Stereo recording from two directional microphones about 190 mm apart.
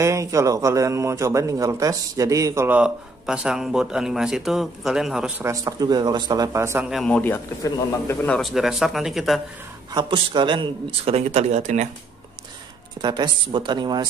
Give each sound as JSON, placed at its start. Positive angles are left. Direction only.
{"t": 0.0, "sound": "a man's voice", "side_deg": -15}
{"t": 5.4, "sound": "a man's voice", "side_deg": -15}
{"t": 6.9, "sound": "a man's voice", "side_deg": 5}
{"t": 8.4, "sound": "speech", "side_deg": 0}
{"t": 9.9, "sound": "a man's voice", "side_deg": -25}
{"t": 13.0, "sound": "speech", "side_deg": -25}